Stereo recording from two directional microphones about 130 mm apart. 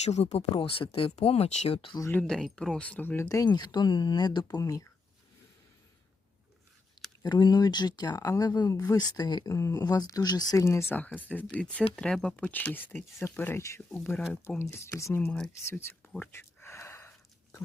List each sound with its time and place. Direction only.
0.0 s speech: 60° left (ahead or behind)
0.6 s speech: 45° left (ahead or behind)
2.0 s speech: 20° left (ahead or behind)
2.2 s speech: 5° left (ahead or behind)
3.2 s speech: 30° left (ahead or behind)
7.2 s speech: 30° left (ahead or behind)
15.6 s a sound: 15° left (ahead or behind)